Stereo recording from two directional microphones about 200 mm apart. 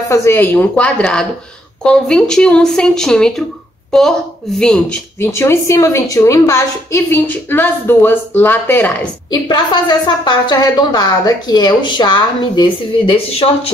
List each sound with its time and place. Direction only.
0.1 s speech: 15° left (ahead or behind)
4.6 s speech: 5° left (ahead or behind)
9.3 s a woman's voice: 20° left (ahead or behind)